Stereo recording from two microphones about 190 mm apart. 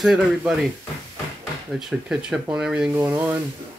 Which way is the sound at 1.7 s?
Centre (ahead or behind).